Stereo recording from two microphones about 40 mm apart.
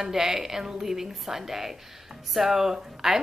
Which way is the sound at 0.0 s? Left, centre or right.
Centre.